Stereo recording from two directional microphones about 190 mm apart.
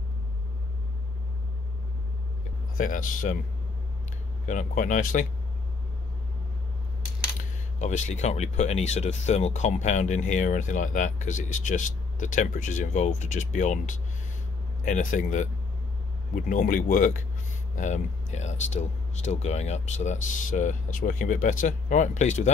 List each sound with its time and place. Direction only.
2.8 s speech: 45° left (ahead or behind)
4.5 s speech: 40° left (ahead or behind)
7.8 s speech: 40° left (ahead or behind)